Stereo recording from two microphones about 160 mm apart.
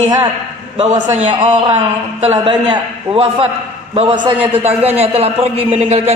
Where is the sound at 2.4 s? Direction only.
30° right (ahead or behind).